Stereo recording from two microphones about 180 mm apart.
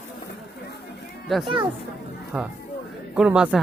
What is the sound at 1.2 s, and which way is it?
Speech, centre (ahead or behind).